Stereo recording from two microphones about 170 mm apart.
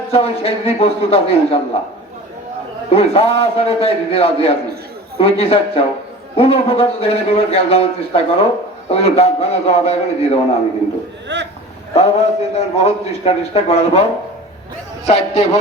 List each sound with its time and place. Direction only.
0.1 s a man's voice: 35° left (ahead or behind)
2.9 s a man's voice: 35° left (ahead or behind)
11.3 s speech: 90° right
11.9 s a man's voice: 40° left (ahead or behind)